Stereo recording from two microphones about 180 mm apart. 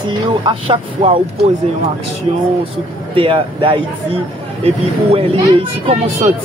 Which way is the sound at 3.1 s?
30° right (ahead or behind).